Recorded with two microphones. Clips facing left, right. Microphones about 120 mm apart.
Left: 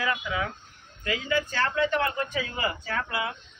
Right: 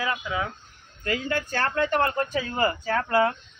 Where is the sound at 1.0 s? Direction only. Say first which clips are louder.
Even; 50° right (ahead or behind).